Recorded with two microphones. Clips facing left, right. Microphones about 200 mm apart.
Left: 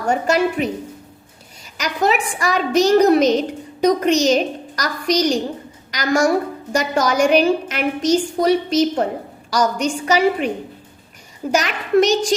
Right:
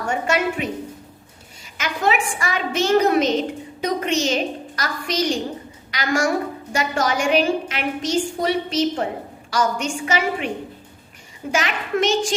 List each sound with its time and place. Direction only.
0.1 s a woman's voice: 35° left (ahead or behind)
1.8 s a woman's voice: 40° left (ahead or behind)
11.5 s a woman's voice: 40° left (ahead or behind)